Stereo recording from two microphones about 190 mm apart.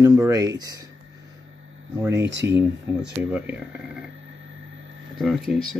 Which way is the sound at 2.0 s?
15° right (ahead or behind).